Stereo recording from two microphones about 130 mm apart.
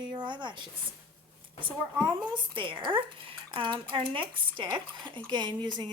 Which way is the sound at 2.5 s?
40° right (ahead or behind).